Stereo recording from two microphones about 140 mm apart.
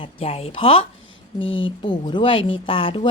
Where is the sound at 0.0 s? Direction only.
45° left (ahead or behind).